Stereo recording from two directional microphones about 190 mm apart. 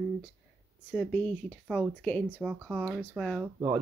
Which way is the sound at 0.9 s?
10° left (ahead or behind).